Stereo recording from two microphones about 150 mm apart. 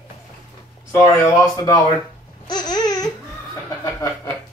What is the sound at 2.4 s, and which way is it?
Babbling, 30° left (ahead or behind).